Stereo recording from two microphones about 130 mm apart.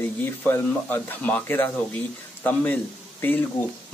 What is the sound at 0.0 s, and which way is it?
Speech, 15° left (ahead or behind).